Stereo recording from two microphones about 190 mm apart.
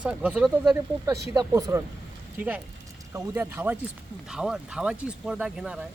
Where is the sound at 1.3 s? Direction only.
15° right (ahead or behind).